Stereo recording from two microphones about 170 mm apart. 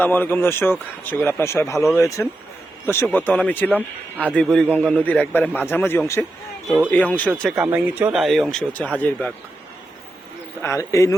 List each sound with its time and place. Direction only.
0.0 s speech: 10° left (ahead or behind)
7.5 s speech: 10° right (ahead or behind); by 9.3 s 10° left (ahead or behind)
10.6 s speech: 15° left (ahead or behind)